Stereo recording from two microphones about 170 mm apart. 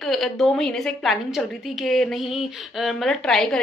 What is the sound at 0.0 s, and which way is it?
A woman's voice, centre (ahead or behind).